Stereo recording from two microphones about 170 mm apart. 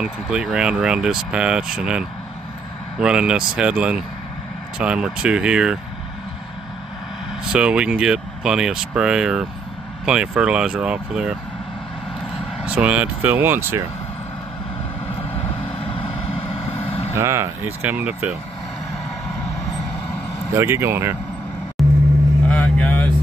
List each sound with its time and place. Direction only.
0.0 s speech: 5° right (ahead or behind)
7.5 s speech: 5° right (ahead or behind)
12.6 s speech: 10° right (ahead or behind)
15.2 s vehicle: 35° left (ahead or behind)
17.2 s speech: 15° right (ahead or behind)
20.5 s speech: 15° right (ahead or behind)
22.5 s vehicle: 10° left (ahead or behind)